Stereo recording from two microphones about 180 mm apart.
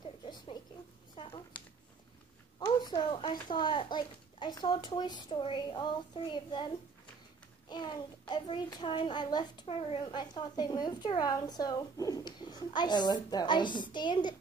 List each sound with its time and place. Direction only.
0.0 s rodents: 25° left (ahead or behind)
1.1 s a sound: 30° left (ahead or behind)
2.6 s a child's voice: 20° left (ahead or behind)
7.7 s a child's voice: 25° left (ahead or behind)